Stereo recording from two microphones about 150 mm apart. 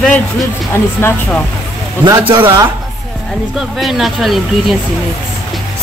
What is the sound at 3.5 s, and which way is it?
Speech, centre (ahead or behind).